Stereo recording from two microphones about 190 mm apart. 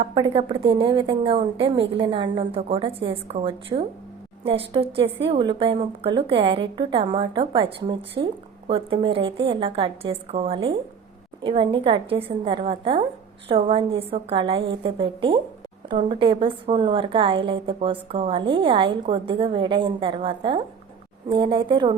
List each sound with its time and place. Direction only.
0.0 s a woman's voice: 30° right (ahead or behind)